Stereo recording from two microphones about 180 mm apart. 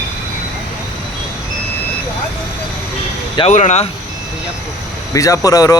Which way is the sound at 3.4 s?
40° left (ahead or behind).